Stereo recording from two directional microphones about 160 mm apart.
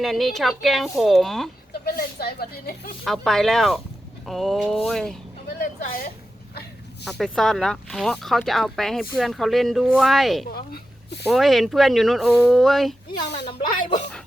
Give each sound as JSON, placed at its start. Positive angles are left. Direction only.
{"t": 0.0, "sound": "speech", "side_deg": 0}
{"t": 1.8, "sound": "speech", "side_deg": 75}
{"t": 3.0, "sound": "speech", "side_deg": 0}
{"t": 7.0, "sound": "speech", "side_deg": 0}
{"t": 10.5, "sound": "a woman's voice", "side_deg": 75}
{"t": 11.3, "sound": "speech", "side_deg": 0}
{"t": 13.2, "sound": "speech", "side_deg": 90}
{"t": 13.7, "sound": "speech", "side_deg": 50}